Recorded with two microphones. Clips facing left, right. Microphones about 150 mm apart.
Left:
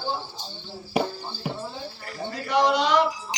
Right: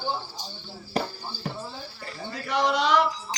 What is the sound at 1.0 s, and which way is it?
Music, 10° left (ahead or behind).